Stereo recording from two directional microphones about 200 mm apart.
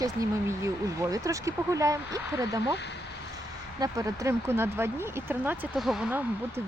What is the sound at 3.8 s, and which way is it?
Speech, 15° right (ahead or behind).